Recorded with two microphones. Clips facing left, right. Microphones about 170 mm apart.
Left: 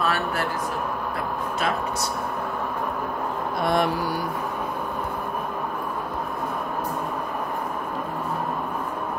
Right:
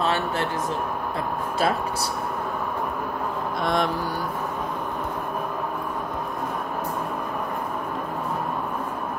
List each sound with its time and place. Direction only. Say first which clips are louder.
0.0 s speech: right 1 dB; 25° right (ahead or behind)
3.6 s mantra: left 2 dB; 5° left (ahead or behind)